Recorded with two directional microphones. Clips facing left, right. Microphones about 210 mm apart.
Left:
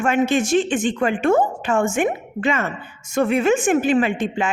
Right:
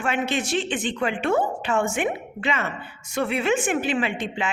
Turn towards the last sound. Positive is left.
turn(degrees=45)  # may be behind; listen again after turning